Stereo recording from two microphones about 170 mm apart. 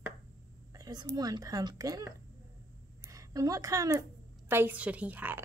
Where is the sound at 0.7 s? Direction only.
20° right (ahead or behind).